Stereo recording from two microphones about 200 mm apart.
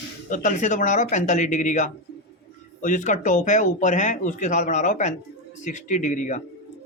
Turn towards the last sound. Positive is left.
turn(degrees=40)  # may be behind; listen again after turning